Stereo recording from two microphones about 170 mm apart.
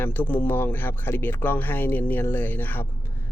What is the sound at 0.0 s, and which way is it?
Speech, 10° left (ahead or behind).